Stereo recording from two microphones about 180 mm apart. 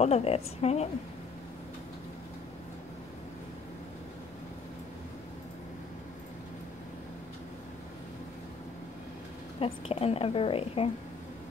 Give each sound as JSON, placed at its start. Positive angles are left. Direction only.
{"t": 0.0, "sound": "a woman's voice", "side_deg": 35}
{"t": 9.6, "sound": "a woman's voice", "side_deg": 35}